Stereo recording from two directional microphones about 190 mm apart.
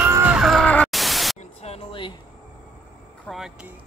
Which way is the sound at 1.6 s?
30° left (ahead or behind).